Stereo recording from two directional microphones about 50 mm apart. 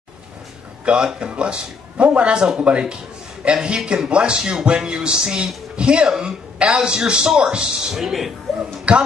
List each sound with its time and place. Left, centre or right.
0.8 s speech: centre
3.6 s a man's voice: centre
7.9 s speech: centre
8.9 s speech: right